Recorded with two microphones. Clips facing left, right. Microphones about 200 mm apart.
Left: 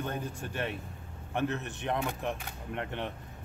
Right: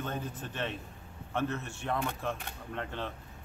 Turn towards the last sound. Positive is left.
turn(degrees=20)  # may be behind; listen again after turning